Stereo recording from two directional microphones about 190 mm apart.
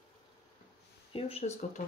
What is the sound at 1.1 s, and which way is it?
Speech, 30° left (ahead or behind).